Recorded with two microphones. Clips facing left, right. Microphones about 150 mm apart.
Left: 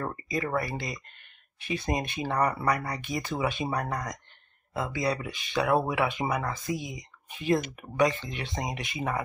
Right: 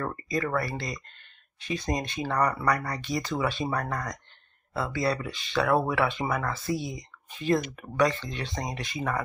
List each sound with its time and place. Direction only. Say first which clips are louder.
0.0 s speech: right 2 dB; 20° left (ahead or behind)